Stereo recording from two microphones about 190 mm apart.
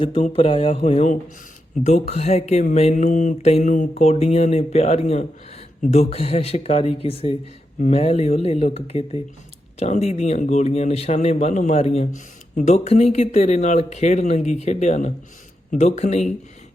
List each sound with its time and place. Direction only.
0.0 s speech: 30° left (ahead or behind)